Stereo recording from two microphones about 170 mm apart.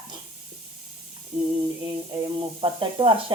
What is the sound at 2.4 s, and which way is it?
Speech, 30° right (ahead or behind).